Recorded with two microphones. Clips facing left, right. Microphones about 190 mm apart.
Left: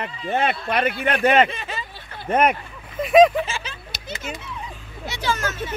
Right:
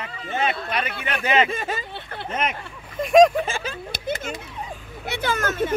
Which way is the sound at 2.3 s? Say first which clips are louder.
Left 9 dB; 60° left (ahead or behind).